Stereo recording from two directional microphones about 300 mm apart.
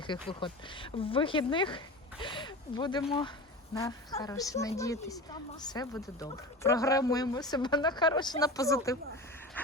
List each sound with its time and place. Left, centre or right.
0.1 s speech: centre